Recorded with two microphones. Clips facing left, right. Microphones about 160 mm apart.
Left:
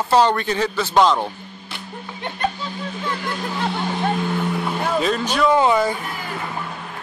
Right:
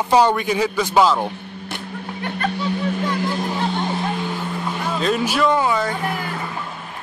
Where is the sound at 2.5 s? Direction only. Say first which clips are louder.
Right 8 dB; 65° right (ahead or behind).